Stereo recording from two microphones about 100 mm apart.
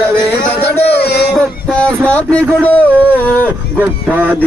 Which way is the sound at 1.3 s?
10° left (ahead or behind).